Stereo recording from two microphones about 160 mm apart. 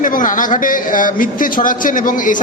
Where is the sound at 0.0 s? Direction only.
55° left (ahead or behind).